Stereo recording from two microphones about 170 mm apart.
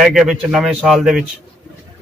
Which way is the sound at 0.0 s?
Centre (ahead or behind).